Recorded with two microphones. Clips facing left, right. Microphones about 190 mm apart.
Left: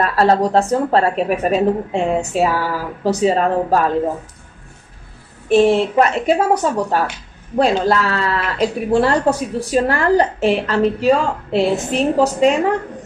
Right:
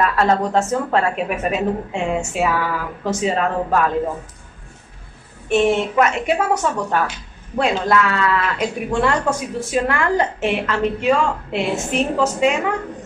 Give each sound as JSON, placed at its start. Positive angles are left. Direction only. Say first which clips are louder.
{"t": 0.0, "sound": "speech", "louder": "left 3 dB", "side_deg": 35}
{"t": 5.5, "sound": "speech", "louder": "left 4 dB", "side_deg": 35}